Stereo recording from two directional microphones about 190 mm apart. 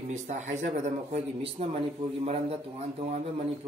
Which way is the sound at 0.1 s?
40° right (ahead or behind).